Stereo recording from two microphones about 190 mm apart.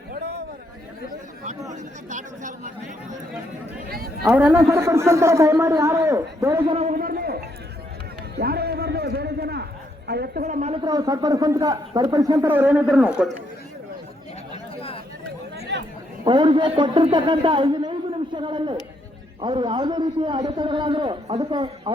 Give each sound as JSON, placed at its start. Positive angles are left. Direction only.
{"t": 1.7, "sound": "speech", "side_deg": -40}
{"t": 3.8, "sound": "speech", "side_deg": -55}
{"t": 4.2, "sound": "a woman's voice", "side_deg": -5}
{"t": 6.7, "sound": "a man's voice", "side_deg": -40}
{"t": 8.4, "sound": "a sound", "side_deg": -55}
{"t": 10.1, "sound": "a woman's voice", "side_deg": -60}
{"t": 10.4, "sound": "speech", "side_deg": -35}
{"t": 10.8, "sound": "a man's voice", "side_deg": -20}
{"t": 14.5, "sound": "chatter", "side_deg": 30}
{"t": 15.5, "sound": "chatter", "side_deg": -60}
{"t": 16.2, "sound": "a man's voice", "side_deg": -25}